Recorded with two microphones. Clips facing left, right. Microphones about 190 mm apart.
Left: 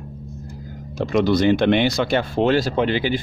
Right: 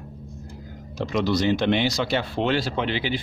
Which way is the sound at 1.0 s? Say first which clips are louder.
Left 5 dB; 55° left (ahead or behind).